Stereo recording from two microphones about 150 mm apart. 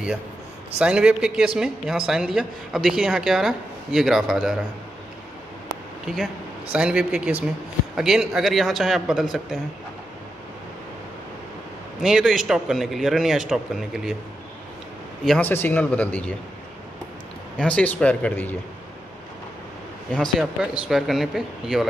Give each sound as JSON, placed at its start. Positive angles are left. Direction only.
{"t": 0.7, "sound": "speech", "side_deg": -5}
{"t": 6.7, "sound": "speech", "side_deg": -5}
{"t": 12.0, "sound": "speech", "side_deg": -5}
{"t": 15.2, "sound": "a man's voice", "side_deg": 10}
{"t": 17.6, "sound": "a man's voice", "side_deg": 5}
{"t": 20.1, "sound": "speech", "side_deg": 0}